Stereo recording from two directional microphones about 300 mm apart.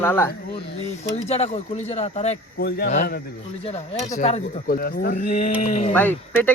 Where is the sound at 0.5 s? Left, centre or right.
Left.